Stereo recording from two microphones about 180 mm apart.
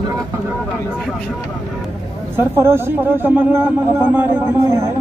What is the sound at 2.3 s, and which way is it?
Speech, 15° right (ahead or behind).